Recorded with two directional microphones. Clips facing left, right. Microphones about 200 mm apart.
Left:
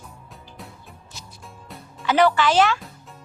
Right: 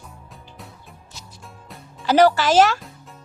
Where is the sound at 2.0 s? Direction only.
40° right (ahead or behind).